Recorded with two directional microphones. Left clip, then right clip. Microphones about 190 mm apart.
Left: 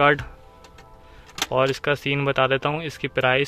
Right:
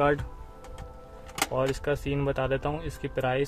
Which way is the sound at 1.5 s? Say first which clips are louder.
Left 8 dB; 20° left (ahead or behind).